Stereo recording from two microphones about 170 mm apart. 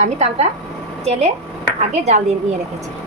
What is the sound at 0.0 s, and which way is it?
Speech, 40° right (ahead or behind).